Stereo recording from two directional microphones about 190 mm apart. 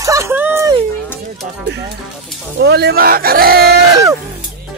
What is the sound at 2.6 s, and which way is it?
Speech, 60° right (ahead or behind).